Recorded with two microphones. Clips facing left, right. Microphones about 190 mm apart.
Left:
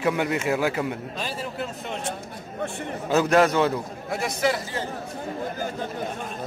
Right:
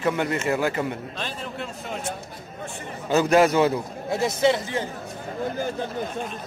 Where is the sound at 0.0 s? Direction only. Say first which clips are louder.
Even; 5° left (ahead or behind).